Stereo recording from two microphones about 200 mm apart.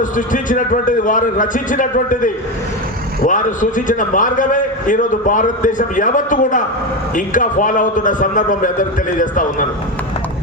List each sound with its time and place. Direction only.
0.0 s a man's voice: 40° left (ahead or behind)